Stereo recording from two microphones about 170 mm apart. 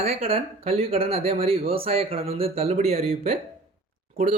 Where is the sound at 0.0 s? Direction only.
35° right (ahead or behind).